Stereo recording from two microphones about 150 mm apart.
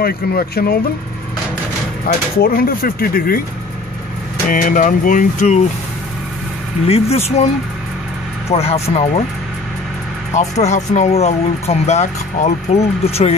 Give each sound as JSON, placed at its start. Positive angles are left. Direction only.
{"t": 0.0, "sound": "speech", "side_deg": 90}
{"t": 2.1, "sound": "speech", "side_deg": 90}
{"t": 2.4, "sound": "speech", "side_deg": 75}
{"t": 4.5, "sound": "speech", "side_deg": 60}
{"t": 6.9, "sound": "speech", "side_deg": 45}
{"t": 8.5, "sound": "speech", "side_deg": 40}
{"t": 10.3, "sound": "speech", "side_deg": 50}